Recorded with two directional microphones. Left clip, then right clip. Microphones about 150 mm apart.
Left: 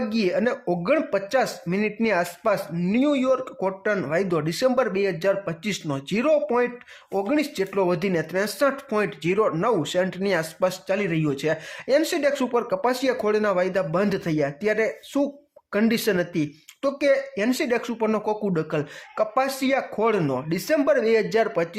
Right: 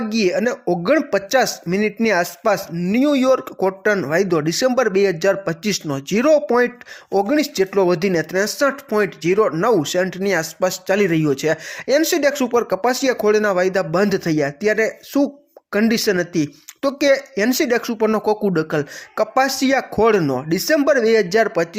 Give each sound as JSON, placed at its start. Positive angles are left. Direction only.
{"t": 0.1, "sound": "speech", "side_deg": -25}